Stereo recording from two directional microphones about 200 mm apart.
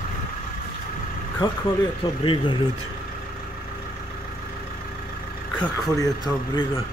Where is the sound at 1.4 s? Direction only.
25° left (ahead or behind).